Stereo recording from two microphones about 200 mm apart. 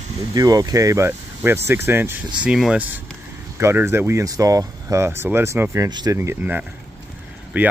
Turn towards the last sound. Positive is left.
turn(degrees=-10)  # may be behind; listen again after turning